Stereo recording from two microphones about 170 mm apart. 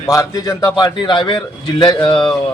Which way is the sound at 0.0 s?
20° left (ahead or behind).